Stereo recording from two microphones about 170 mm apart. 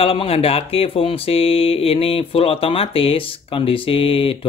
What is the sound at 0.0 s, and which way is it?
Speech, 35° left (ahead or behind).